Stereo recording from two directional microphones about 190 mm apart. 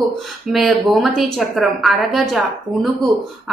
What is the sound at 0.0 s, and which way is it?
Speech, centre (ahead or behind).